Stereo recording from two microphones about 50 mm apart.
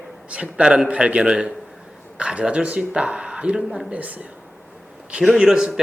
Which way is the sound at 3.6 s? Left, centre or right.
Centre.